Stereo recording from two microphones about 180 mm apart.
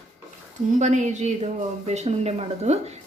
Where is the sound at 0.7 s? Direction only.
40° right (ahead or behind).